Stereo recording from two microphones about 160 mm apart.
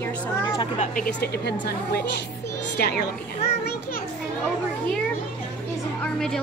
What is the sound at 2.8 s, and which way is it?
Speech, 75° left (ahead or behind).